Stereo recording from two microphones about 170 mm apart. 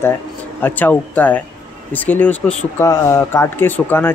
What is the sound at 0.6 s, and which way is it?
Speech, 10° left (ahead or behind).